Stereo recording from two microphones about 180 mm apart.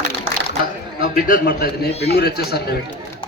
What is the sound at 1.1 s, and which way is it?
A man's voice, 55° left (ahead or behind).